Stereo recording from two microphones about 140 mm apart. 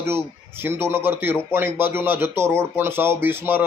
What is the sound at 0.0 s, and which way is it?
Speech, 15° right (ahead or behind).